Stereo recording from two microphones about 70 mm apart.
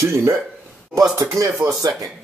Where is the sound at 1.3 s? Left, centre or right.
Right.